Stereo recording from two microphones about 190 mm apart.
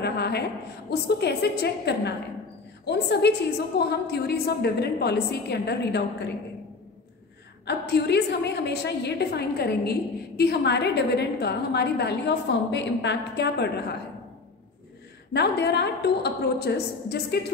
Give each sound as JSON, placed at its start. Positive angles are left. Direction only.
{"t": 0.0, "sound": "a woman's voice", "side_deg": 60}
{"t": 7.6, "sound": "a woman's voice", "side_deg": 60}
{"t": 15.3, "sound": "a woman's voice", "side_deg": 60}